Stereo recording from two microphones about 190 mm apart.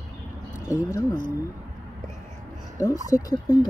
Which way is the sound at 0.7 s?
15° left (ahead or behind).